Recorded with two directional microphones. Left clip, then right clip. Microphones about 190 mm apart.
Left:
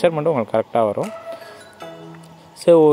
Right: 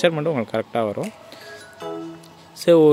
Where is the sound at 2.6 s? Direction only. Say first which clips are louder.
Left 2 dB; 10° right (ahead or behind).